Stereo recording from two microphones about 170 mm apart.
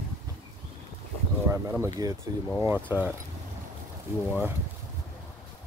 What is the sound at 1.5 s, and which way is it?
Speech, 20° right (ahead or behind).